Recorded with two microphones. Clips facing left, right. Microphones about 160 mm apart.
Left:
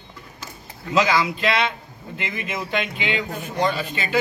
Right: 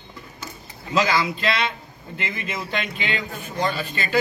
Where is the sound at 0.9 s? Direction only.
15° left (ahead or behind).